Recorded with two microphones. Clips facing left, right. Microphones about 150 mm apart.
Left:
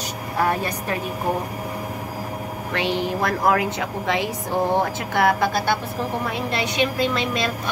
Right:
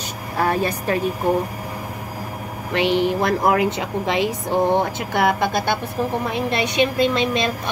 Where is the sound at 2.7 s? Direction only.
20° right (ahead or behind).